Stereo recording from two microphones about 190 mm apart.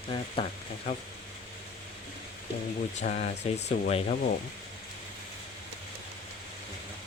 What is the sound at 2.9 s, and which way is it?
Speech, 35° left (ahead or behind).